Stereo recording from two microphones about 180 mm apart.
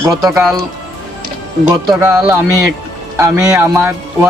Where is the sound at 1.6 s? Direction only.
10° right (ahead or behind).